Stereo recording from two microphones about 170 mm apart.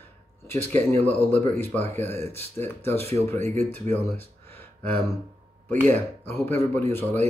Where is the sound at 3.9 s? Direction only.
10° left (ahead or behind).